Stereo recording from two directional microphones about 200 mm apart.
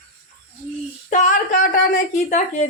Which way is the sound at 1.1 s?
40° left (ahead or behind).